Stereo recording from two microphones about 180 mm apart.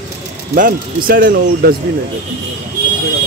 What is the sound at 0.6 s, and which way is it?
Speech, 50° right (ahead or behind).